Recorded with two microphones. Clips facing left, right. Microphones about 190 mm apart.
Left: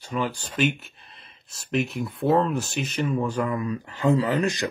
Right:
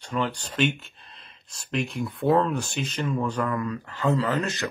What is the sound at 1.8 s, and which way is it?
Speech, centre (ahead or behind).